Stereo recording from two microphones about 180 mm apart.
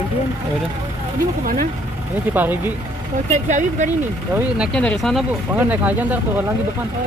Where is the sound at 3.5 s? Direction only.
40° right (ahead or behind).